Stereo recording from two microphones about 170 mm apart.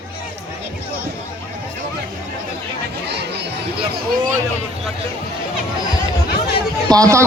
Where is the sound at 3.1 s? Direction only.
80° right.